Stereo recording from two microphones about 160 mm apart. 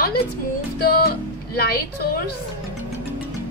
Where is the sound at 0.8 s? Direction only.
70° left (ahead or behind).